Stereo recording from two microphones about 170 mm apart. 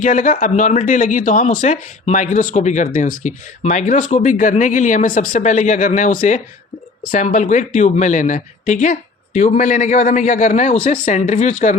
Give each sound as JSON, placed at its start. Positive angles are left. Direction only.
{"t": 0.0, "sound": "speech", "side_deg": 50}